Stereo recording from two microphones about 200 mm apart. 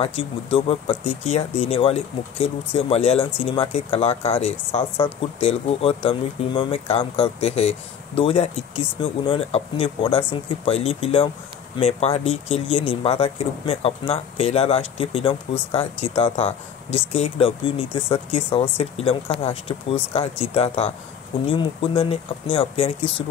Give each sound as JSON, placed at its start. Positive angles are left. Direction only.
{"t": 0.0, "sound": "speech", "side_deg": 30}